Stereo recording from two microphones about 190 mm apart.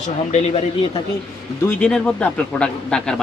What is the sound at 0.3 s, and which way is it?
Speech, 35° left (ahead or behind).